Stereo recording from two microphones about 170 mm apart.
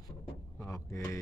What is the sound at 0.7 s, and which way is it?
Speech, 15° left (ahead or behind).